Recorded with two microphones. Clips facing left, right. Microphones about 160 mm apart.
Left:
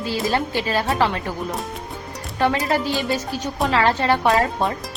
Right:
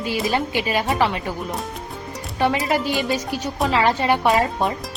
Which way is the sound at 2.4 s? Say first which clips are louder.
Even; 5° right (ahead or behind).